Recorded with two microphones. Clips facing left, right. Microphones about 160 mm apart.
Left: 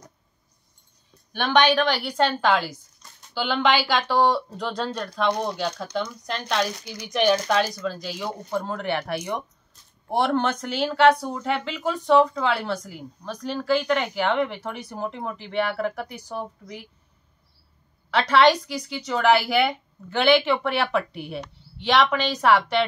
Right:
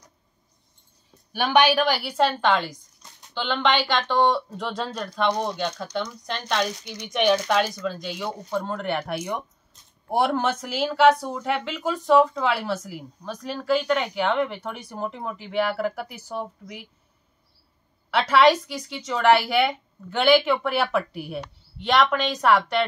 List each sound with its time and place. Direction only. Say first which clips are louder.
1.3 s speech: even; 10° right (ahead or behind)
18.1 s speech: even; 5° right (ahead or behind)